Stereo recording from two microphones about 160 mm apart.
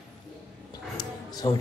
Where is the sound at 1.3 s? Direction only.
25° left (ahead or behind).